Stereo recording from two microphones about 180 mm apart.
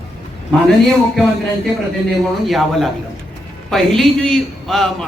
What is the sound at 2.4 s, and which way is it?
Speech, centre (ahead or behind).